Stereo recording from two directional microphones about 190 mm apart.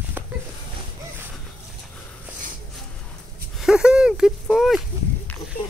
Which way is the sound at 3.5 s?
5° right (ahead or behind).